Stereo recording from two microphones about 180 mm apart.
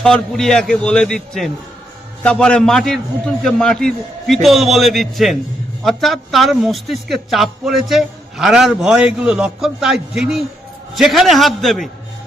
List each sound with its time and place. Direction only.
0.0 s a man's voice: 5° left (ahead or behind)